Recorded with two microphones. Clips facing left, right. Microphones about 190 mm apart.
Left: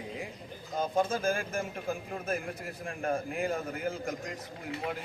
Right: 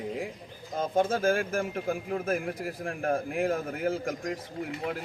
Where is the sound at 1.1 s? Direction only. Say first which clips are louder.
Right 5 dB; 55° right (ahead or behind).